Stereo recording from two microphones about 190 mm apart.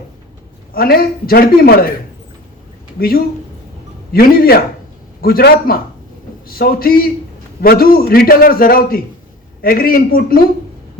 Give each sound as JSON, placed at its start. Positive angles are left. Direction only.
{"t": 0.7, "sound": "a man's voice", "side_deg": 50}
{"t": 3.0, "sound": "a man's voice", "side_deg": 50}